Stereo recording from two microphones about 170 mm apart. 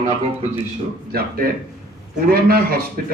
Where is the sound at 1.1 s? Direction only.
60° right (ahead or behind).